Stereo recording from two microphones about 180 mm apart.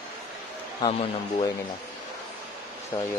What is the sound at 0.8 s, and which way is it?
Speech, 25° left (ahead or behind).